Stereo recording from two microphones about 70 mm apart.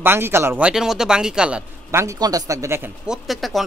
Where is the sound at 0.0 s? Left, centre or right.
Right.